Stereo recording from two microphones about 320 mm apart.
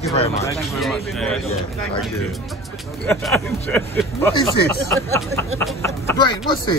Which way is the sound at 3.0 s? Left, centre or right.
Centre.